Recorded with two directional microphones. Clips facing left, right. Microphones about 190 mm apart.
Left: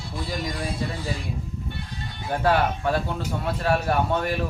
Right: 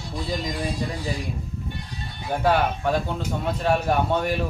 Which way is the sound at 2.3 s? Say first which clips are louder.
Even; 15° right (ahead or behind).